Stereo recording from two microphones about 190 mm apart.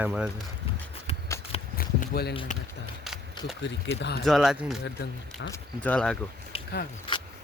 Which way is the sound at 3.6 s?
70° left (ahead or behind).